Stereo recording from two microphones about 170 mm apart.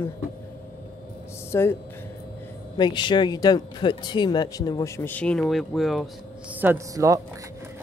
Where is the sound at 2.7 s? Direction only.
25° left (ahead or behind); by 6.1 s centre (ahead or behind).